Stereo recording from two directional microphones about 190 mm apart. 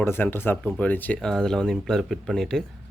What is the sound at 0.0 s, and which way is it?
Speech, 10° left (ahead or behind).